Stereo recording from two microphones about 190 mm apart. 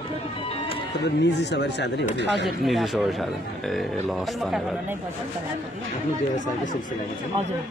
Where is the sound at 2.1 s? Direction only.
65° right (ahead or behind).